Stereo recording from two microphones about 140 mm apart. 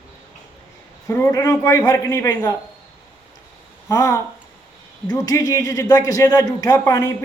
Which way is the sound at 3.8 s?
20° left (ahead or behind).